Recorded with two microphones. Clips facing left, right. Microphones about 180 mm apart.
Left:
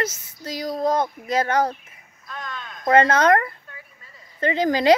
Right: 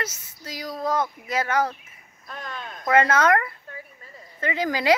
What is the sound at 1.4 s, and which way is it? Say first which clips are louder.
Speech: left 1 dB; 35° left (ahead or behind).